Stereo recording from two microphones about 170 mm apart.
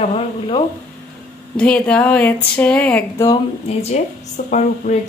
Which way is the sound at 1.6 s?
5° left (ahead or behind).